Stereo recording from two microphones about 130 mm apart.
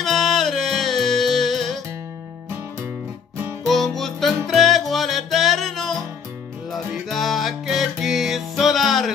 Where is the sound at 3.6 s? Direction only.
Centre (ahead or behind).